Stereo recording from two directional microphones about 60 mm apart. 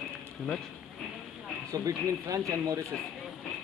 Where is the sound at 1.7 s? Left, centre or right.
Right.